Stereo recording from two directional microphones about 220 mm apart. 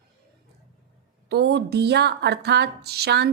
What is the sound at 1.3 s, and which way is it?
Speech, 50° right (ahead or behind).